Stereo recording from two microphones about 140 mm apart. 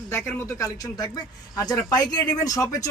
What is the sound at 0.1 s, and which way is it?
Speech, 20° left (ahead or behind).